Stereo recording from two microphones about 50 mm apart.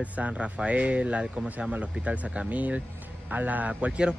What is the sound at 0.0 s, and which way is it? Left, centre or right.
Speech, right.